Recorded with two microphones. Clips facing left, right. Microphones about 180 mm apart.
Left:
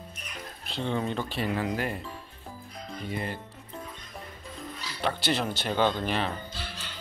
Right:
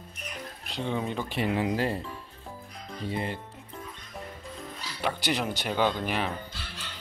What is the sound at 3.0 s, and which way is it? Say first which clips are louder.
Speech: right 2 dB; 25° right (ahead or behind).